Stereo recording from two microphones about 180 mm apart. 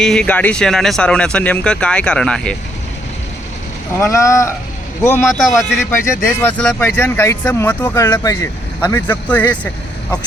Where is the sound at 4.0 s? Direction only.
15° left (ahead or behind).